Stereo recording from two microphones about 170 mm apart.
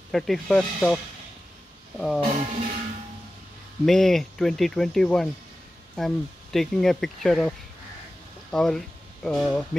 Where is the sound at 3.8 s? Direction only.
Centre (ahead or behind).